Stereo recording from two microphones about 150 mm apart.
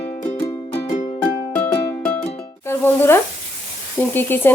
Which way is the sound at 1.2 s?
10° left (ahead or behind).